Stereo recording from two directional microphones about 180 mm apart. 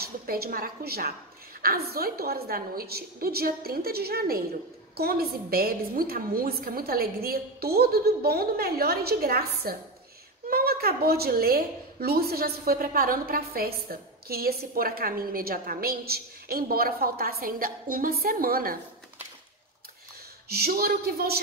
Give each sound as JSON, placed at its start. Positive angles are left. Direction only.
{"t": 0.0, "sound": "a woman's voice", "side_deg": -55}
{"t": 20.4, "sound": "a woman's voice", "side_deg": -60}